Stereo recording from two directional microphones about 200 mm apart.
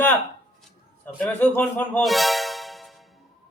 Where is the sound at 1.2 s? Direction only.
10° left (ahead or behind).